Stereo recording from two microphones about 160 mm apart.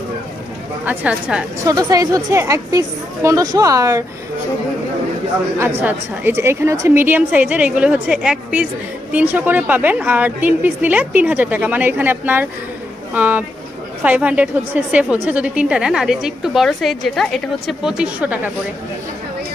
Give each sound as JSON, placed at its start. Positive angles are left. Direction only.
{"t": 0.8, "sound": "a woman's voice", "side_deg": -10}
{"t": 1.6, "sound": "a woman's voice", "side_deg": -20}
{"t": 5.6, "sound": "a woman's voice", "side_deg": -15}